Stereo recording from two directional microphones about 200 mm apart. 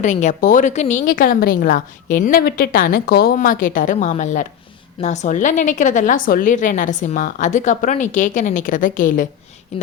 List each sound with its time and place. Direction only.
0.0 s a woman's voice: 35° left (ahead or behind)